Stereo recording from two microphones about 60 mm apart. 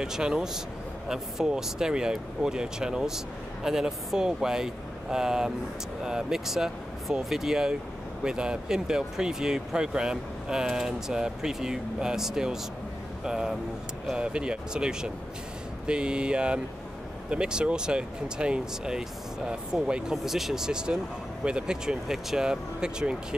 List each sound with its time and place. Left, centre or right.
0.0 s speech: centre